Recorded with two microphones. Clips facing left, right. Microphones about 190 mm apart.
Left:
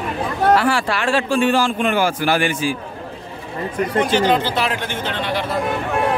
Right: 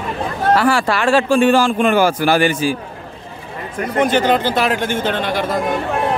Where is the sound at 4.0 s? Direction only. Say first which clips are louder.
Right 2 dB; 50° right (ahead or behind).